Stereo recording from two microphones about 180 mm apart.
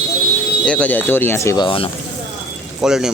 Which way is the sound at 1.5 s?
30° left (ahead or behind).